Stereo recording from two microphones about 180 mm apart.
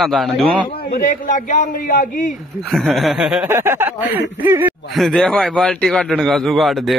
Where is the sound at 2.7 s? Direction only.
Centre (ahead or behind).